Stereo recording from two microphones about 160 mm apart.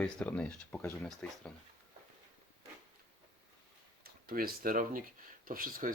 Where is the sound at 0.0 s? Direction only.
5° left (ahead or behind).